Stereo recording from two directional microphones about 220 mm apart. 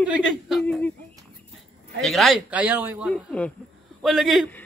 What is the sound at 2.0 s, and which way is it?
A man's voice, centre (ahead or behind).